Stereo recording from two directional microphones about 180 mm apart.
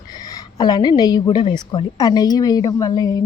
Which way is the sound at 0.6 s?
25° left (ahead or behind).